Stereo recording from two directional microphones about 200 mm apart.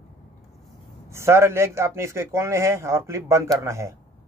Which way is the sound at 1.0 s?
15° right (ahead or behind).